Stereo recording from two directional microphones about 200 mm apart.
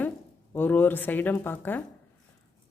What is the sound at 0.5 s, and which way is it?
A woman's voice, 10° left (ahead or behind).